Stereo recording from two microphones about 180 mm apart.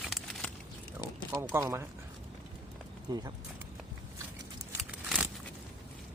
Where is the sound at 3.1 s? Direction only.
20° right (ahead or behind).